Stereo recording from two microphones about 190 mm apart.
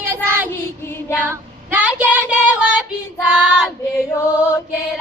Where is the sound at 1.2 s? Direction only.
10° right (ahead or behind).